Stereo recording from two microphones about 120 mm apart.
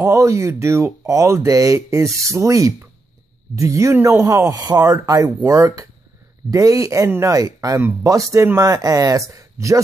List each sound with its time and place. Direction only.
0.0 s speech: 25° right (ahead or behind)